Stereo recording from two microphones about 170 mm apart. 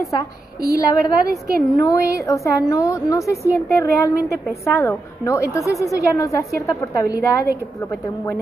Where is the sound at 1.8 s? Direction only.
20° left (ahead or behind).